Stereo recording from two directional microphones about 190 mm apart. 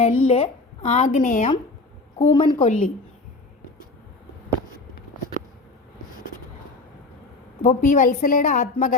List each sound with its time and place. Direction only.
0.0 s a woman's voice: 35° left (ahead or behind)
2.3 s a woman's voice: 25° left (ahead or behind)
2.6 s a woman's voice: 40° left (ahead or behind)
7.6 s a woman's voice: 40° left (ahead or behind)